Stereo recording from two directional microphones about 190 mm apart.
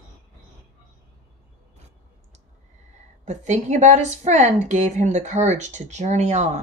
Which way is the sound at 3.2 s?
40° right (ahead or behind).